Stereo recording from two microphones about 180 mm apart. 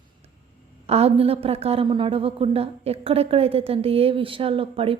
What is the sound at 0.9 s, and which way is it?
A woman's voice, 35° right (ahead or behind).